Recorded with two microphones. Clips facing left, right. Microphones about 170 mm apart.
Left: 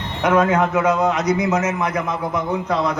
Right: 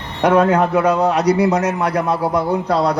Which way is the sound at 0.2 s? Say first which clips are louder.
Right 3 dB; 35° right (ahead or behind).